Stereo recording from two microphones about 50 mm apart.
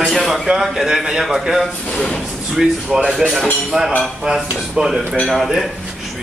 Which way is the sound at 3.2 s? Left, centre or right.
Centre.